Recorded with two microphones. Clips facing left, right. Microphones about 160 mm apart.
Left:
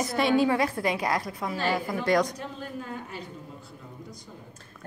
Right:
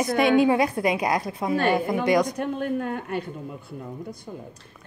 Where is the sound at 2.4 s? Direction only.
60° right (ahead or behind).